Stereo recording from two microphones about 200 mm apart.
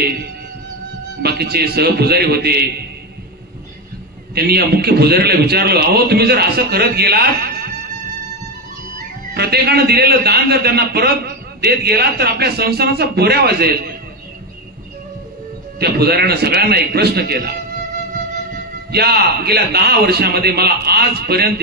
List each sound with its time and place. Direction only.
1.2 s a man's voice: 50° right (ahead or behind)
4.4 s a man's voice: 50° right (ahead or behind)
9.3 s a man's voice: 50° right (ahead or behind)
15.8 s a man's voice: 50° right (ahead or behind)
18.9 s a man's voice: 50° right (ahead or behind)